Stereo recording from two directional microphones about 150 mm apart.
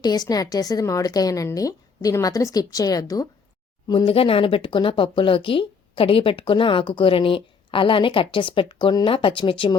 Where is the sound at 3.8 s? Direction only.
35° left (ahead or behind).